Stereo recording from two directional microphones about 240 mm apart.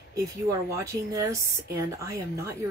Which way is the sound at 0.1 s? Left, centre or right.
Centre.